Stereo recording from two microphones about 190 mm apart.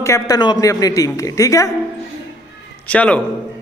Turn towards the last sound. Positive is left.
turn(degrees=5)  # may be behind; listen again after turning